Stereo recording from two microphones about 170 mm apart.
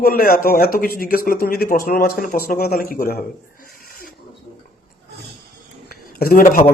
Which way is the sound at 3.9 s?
60° left (ahead or behind).